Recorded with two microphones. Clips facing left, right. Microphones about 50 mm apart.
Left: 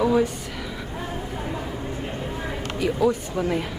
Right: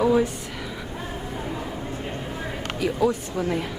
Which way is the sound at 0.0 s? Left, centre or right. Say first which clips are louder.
Even; centre.